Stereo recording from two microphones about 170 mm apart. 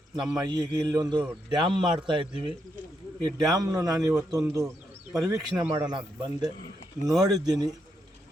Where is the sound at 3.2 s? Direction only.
25° right (ahead or behind).